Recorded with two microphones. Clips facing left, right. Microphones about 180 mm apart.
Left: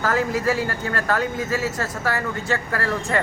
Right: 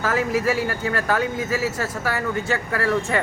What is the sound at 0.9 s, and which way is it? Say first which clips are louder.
Speech: left 1 dB; 5° right (ahead or behind).